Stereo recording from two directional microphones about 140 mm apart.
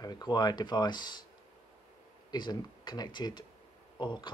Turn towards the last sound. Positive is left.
turn(degrees=35)  # may be behind; listen again after turning